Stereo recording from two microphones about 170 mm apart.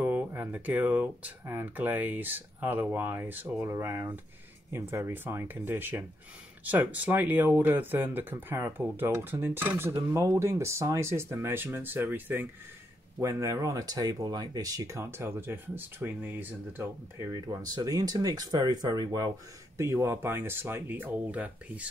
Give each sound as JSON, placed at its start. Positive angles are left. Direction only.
{"t": 0.0, "sound": "speech", "side_deg": -10}